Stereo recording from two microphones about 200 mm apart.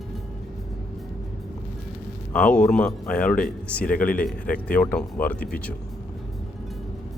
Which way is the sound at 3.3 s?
45° left (ahead or behind).